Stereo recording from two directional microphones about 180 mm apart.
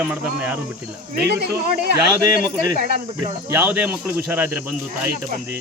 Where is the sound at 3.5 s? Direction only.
10° right (ahead or behind).